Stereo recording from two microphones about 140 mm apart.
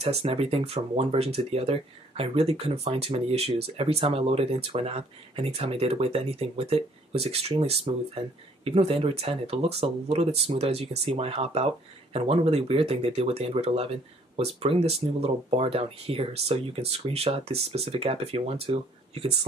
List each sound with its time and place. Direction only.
0.0 s speech: 45° right (ahead or behind)